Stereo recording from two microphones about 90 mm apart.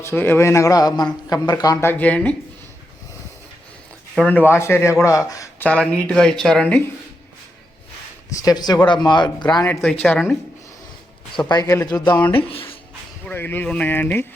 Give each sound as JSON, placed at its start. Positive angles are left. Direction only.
{"t": 0.0, "sound": "speech", "side_deg": 25}
{"t": 1.8, "sound": "speech", "side_deg": 20}
{"t": 4.3, "sound": "speech", "side_deg": 20}
{"t": 5.5, "sound": "speech", "side_deg": 15}
{"t": 8.4, "sound": "speech", "side_deg": 45}
{"t": 9.6, "sound": "speech", "side_deg": 15}
{"t": 11.4, "sound": "speech", "side_deg": 45}
{"t": 12.3, "sound": "speech", "side_deg": 90}
{"t": 13.2, "sound": "speech", "side_deg": 20}